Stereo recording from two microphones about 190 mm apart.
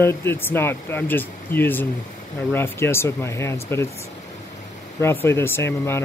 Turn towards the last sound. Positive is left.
turn(degrees=15)  # may be behind; listen again after turning